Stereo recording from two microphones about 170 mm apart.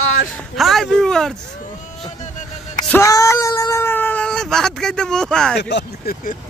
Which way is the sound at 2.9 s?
20° left (ahead or behind).